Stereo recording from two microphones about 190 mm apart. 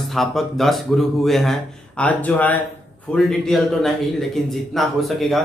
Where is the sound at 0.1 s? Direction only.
Centre (ahead or behind).